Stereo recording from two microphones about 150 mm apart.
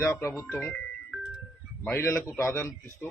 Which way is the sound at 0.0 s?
20° left (ahead or behind).